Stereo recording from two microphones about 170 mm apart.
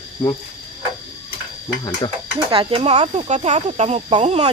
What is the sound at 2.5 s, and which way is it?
Speech, 35° right (ahead or behind).